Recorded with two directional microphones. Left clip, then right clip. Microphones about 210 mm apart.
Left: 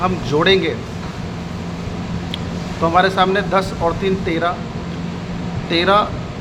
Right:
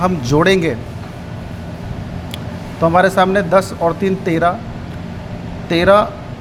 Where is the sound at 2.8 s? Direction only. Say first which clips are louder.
Right 2 dB; 35° right (ahead or behind).